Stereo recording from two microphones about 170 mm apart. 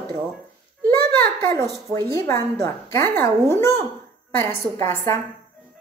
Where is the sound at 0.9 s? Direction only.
15° left (ahead or behind).